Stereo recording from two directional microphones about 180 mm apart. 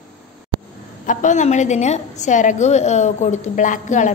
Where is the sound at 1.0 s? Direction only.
45° left (ahead or behind).